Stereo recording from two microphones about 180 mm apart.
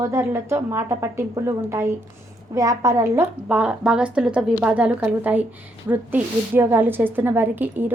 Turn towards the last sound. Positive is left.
turn(degrees=-10)  # may be behind; listen again after turning